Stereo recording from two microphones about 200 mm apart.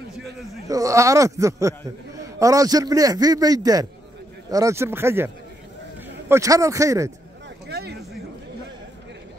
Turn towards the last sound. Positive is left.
turn(degrees=-55)  # may be behind; listen again after turning